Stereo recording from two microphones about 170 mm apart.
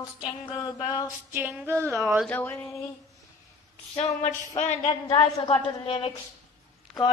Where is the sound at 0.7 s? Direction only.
20° left (ahead or behind).